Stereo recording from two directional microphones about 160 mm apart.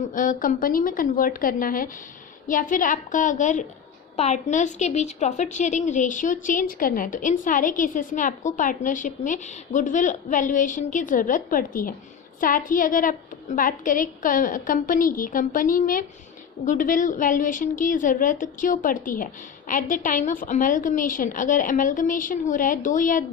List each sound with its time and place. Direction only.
0.1 s a woman's voice: 55° left (ahead or behind)